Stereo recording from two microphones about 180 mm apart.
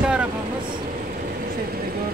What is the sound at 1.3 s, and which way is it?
Vehicle, 55° right (ahead or behind).